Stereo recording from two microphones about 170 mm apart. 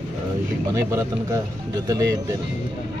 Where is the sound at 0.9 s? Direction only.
20° right (ahead or behind).